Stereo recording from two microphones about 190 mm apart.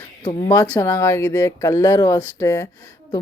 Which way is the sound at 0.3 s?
20° left (ahead or behind).